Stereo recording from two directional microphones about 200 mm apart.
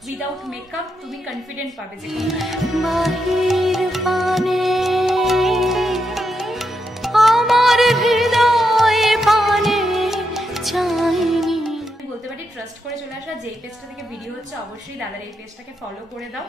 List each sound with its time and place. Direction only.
2.0 s music: centre (ahead or behind)